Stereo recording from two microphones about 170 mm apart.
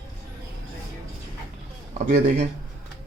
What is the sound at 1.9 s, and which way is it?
Speech, 50° right (ahead or behind).